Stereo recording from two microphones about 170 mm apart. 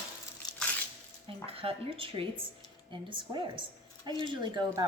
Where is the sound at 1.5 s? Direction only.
35° right (ahead or behind).